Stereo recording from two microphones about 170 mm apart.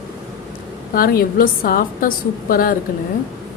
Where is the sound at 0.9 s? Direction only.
60° left (ahead or behind).